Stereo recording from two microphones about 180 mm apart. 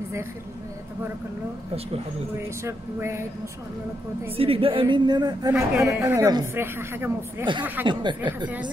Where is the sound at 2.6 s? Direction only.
15° right (ahead or behind).